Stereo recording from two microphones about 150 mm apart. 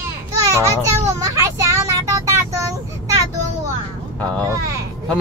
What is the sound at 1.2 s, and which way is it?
Vehicle, 20° right (ahead or behind).